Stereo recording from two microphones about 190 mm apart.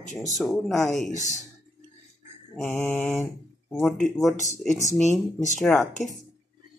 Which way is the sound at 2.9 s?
10° left (ahead or behind).